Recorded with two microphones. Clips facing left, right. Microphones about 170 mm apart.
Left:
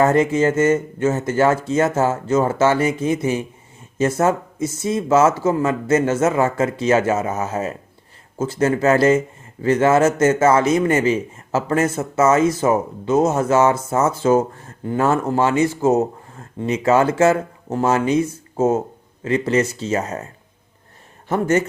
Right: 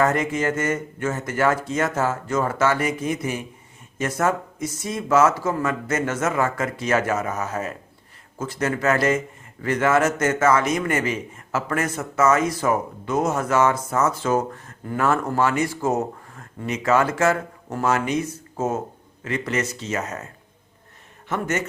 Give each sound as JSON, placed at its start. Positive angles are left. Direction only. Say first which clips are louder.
{"t": 0.0, "sound": "a man's voice", "louder": "left 6 dB", "side_deg": 25}
{"t": 21.2, "sound": "speech", "louder": "left 7 dB", "side_deg": 35}